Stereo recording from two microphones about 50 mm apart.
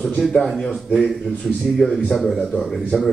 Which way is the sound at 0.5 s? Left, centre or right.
Centre.